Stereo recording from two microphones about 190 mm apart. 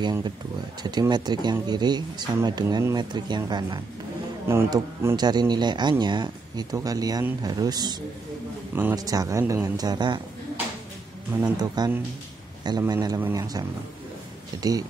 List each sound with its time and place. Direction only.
0.0 s speech: 20° right (ahead or behind)
11.5 s speech: 20° right (ahead or behind)